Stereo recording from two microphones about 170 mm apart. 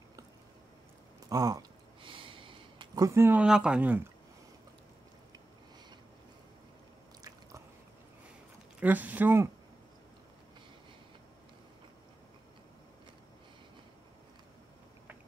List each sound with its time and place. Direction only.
1.3 s a sound: 20° right (ahead or behind)
7.2 s squish: 20° right (ahead or behind)
8.7 s speech: 10° right (ahead or behind)